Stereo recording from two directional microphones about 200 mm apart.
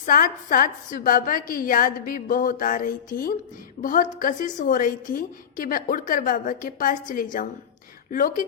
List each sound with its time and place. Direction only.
0.0 s a woman's voice: 45° left (ahead or behind)